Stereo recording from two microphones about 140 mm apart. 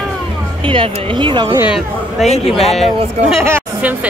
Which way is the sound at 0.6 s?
40° right (ahead or behind).